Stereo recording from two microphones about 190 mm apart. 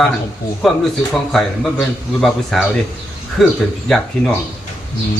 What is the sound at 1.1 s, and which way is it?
Speech, centre (ahead or behind).